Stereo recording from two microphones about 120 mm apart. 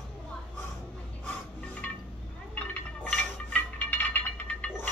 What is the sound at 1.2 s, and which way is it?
Filing, 10° left (ahead or behind).